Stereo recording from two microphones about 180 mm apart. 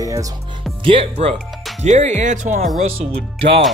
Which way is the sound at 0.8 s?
30° right (ahead or behind).